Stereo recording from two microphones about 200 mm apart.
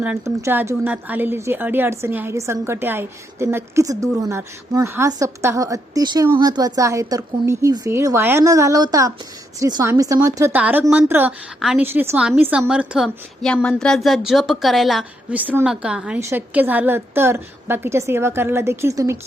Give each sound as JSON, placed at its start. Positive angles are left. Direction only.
{"t": 0.0, "sound": "a woman's voice", "side_deg": -10}